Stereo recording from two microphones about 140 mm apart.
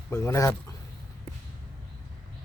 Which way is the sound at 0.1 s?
20° left (ahead or behind).